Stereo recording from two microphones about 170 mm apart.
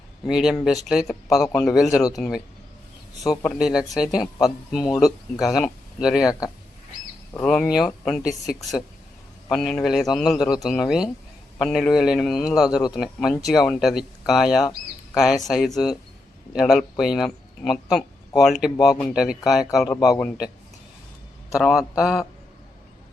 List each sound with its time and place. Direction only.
0.3 s speech: 5° right (ahead or behind)
3.4 s speech: centre (ahead or behind)
4.2 s speech: 20° left (ahead or behind)
4.7 s speech: centre (ahead or behind)
7.4 s speech: centre (ahead or behind)
19.9 s speech: 20° left (ahead or behind)
21.5 s speech: centre (ahead or behind)